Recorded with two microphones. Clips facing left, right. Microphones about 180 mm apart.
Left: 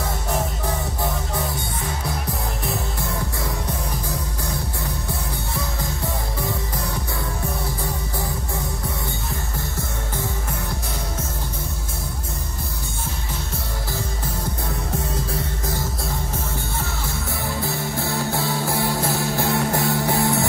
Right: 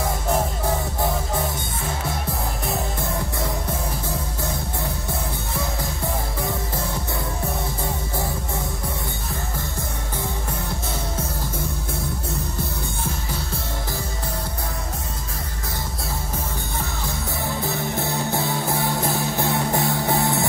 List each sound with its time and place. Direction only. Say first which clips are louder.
17.6 s music: even; 20° right (ahead or behind)